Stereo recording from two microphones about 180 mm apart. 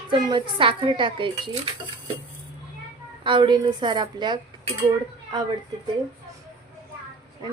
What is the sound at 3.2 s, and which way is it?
A woman's voice, 25° right (ahead or behind).